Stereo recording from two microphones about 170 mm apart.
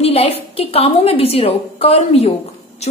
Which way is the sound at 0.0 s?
35° left (ahead or behind).